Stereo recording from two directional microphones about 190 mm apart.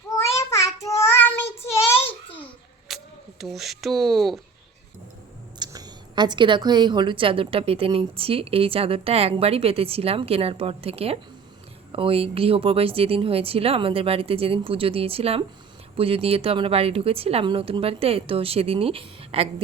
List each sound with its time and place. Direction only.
0.2 s child singing: 15° left (ahead or behind)
2.9 s a sound: centre (ahead or behind)
3.4 s speech: centre (ahead or behind)
5.5 s a woman's voice: 20° right (ahead or behind)